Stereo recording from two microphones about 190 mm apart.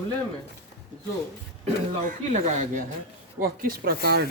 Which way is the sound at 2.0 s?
45° right (ahead or behind).